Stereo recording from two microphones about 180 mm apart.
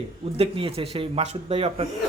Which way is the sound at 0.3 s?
30° right (ahead or behind).